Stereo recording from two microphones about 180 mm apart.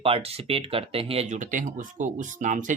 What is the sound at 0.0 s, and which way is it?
Speech, 30° right (ahead or behind).